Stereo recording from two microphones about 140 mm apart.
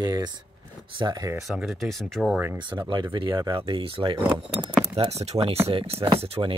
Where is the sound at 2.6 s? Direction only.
35° right (ahead or behind).